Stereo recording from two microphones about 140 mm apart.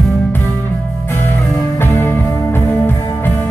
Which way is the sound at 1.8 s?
15° left (ahead or behind).